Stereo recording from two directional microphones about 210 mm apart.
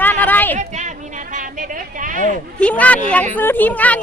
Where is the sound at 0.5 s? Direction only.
35° right (ahead or behind).